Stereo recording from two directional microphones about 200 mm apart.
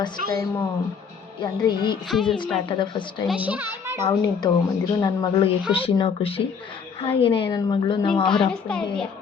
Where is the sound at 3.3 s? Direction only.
5° right (ahead or behind).